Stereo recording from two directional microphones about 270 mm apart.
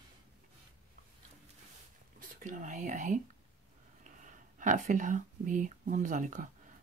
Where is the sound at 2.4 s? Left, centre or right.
Right.